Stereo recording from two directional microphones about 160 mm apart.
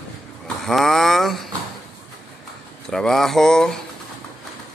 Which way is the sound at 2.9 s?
Centre (ahead or behind).